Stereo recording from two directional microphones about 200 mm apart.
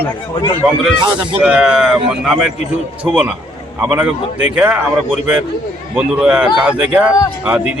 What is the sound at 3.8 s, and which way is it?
Speech, 10° right (ahead or behind).